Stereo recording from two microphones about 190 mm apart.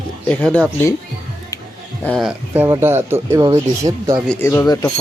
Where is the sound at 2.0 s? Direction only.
Centre (ahead or behind); by 4.2 s 20° right (ahead or behind).